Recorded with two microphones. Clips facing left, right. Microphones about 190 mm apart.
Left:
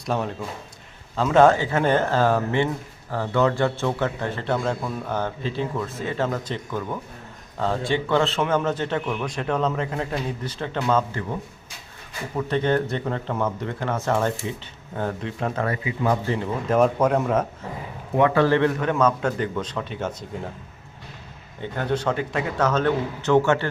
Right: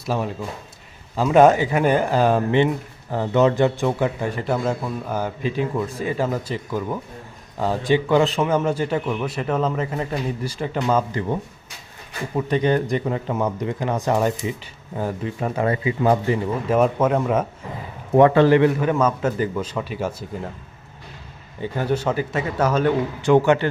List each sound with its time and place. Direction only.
0.0 s speech: centre (ahead or behind)
12.4 s speech: 15° right (ahead or behind)
15.6 s speech: 30° right (ahead or behind)
16.2 s speech: 10° right (ahead or behind)
18.3 s speech: 15° right (ahead or behind)
21.6 s speech: 10° right (ahead or behind)